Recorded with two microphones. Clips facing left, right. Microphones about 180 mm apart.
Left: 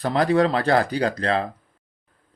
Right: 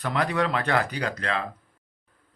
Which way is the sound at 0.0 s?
35° left (ahead or behind).